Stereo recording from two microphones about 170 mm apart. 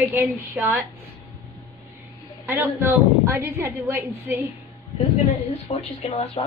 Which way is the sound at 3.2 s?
10° right (ahead or behind).